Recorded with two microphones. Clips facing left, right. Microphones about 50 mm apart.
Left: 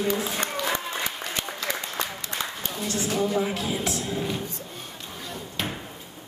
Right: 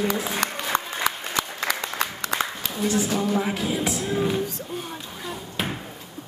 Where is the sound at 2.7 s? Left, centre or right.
Centre.